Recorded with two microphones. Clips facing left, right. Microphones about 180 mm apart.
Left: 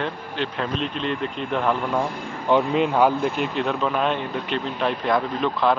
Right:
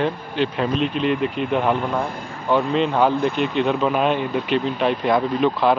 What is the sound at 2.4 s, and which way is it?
Speech, 15° left (ahead or behind).